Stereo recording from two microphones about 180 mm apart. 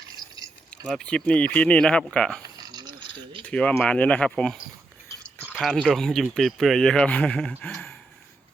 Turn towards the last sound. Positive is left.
turn(degrees=5)  # may be behind; listen again after turning